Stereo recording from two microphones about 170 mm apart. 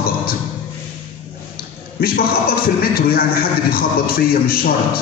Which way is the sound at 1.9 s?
60° left (ahead or behind).